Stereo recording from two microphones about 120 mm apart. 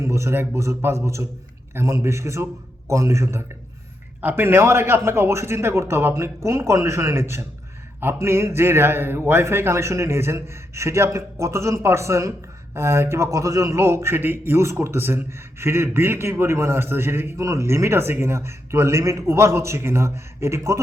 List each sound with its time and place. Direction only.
0.0 s speech: 25° right (ahead or behind)